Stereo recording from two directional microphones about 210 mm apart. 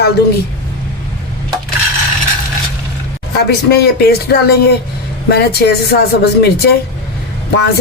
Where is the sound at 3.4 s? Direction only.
50° left (ahead or behind).